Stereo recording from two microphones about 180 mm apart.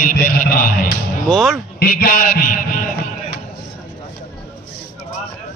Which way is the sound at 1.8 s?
55° left (ahead or behind).